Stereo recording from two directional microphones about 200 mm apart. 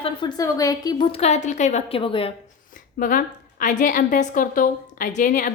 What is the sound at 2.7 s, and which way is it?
A woman's voice, 45° left (ahead or behind).